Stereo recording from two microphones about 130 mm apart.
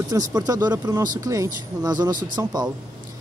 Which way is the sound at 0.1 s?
30° right (ahead or behind).